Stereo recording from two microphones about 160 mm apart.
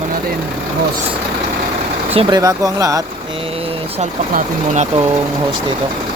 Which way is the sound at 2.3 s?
20° right (ahead or behind).